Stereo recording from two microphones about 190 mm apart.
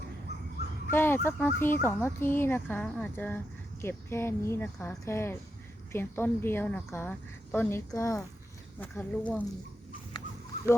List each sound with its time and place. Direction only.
0.9 s speech: 10° left (ahead or behind)